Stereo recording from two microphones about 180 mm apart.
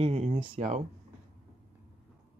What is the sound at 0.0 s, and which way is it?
Speech, 35° right (ahead or behind).